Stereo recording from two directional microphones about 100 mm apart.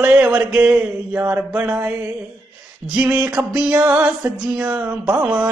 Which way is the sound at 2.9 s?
15° right (ahead or behind).